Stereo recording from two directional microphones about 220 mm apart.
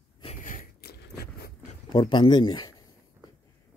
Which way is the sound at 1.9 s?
20° left (ahead or behind).